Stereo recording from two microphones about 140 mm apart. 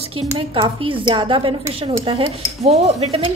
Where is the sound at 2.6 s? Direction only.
50° right (ahead or behind).